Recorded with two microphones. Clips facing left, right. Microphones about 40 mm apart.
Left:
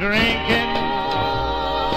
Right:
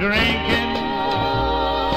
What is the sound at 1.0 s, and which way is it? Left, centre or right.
Music, centre.